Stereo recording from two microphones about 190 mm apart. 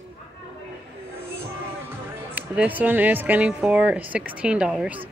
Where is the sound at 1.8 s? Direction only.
10° right (ahead or behind).